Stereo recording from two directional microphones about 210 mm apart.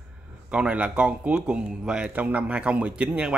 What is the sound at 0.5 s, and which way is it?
Speech, 5° right (ahead or behind).